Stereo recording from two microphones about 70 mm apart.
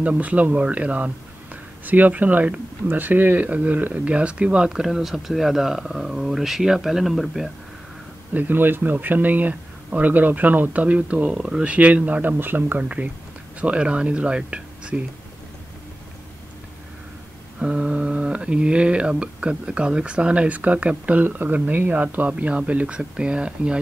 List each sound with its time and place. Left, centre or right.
0.0 s speech: right; by 7.5 s centre
8.3 s speech: right
11.3 s speech: centre
17.6 s speech: centre